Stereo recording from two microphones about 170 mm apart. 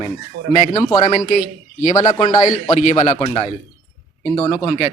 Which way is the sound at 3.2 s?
25° left (ahead or behind).